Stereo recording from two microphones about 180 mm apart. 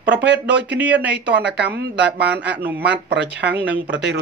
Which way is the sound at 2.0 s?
10° right (ahead or behind).